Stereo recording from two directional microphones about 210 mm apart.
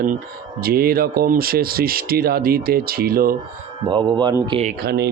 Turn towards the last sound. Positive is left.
turn(degrees=-50)  # may be behind; listen again after turning